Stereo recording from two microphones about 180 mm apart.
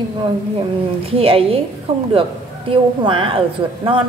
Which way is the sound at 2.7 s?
30° right (ahead or behind).